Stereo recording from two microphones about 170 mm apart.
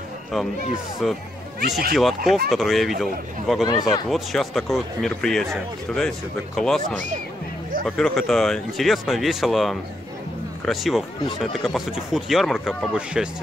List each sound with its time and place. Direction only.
1.0 s speech: centre (ahead or behind)